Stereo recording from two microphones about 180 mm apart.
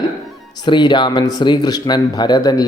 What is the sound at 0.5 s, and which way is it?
Speech, 25° left (ahead or behind).